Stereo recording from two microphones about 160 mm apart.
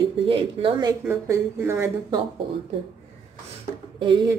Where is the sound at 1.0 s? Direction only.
15° right (ahead or behind).